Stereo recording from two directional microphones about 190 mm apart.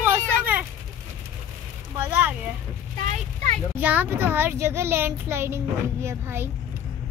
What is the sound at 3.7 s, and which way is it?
A child's voice, 10° right (ahead or behind).